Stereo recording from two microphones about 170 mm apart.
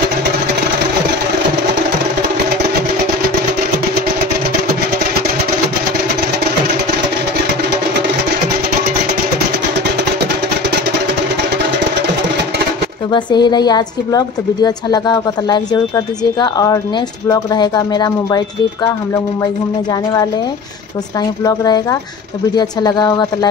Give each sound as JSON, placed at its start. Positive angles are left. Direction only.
{"t": 13.1, "sound": "a woman's voice", "side_deg": 25}
{"t": 21.5, "sound": "a woman's voice", "side_deg": 25}